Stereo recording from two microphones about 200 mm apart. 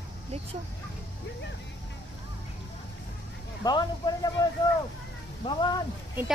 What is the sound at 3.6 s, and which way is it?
Speech, 20° left (ahead or behind).